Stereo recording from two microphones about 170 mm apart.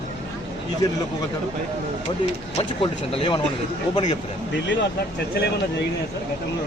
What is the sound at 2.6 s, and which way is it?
Speech, 35° left (ahead or behind).